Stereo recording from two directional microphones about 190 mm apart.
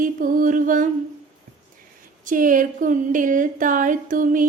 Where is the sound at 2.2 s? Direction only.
45° right (ahead or behind).